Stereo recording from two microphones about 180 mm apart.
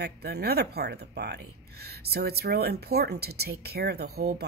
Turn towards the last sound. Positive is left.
turn(degrees=-60)  # may be behind; listen again after turning